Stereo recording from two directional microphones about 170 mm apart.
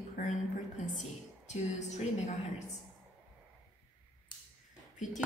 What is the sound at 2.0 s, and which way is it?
Speech, 40° left (ahead or behind).